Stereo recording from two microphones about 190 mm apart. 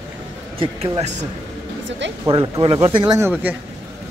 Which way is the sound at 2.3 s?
25° right (ahead or behind).